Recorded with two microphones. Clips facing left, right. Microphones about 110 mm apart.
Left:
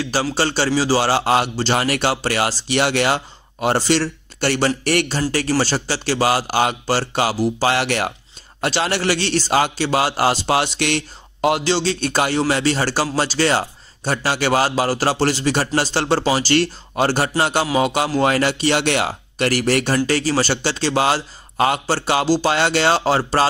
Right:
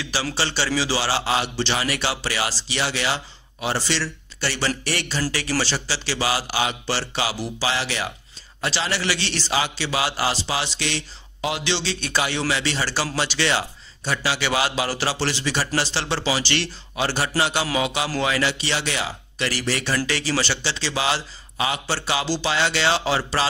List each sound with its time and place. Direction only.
0.0 s a man's voice: 45° left (ahead or behind)